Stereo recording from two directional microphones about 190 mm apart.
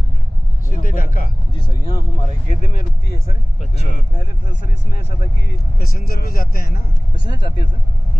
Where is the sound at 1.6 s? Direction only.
30° left (ahead or behind).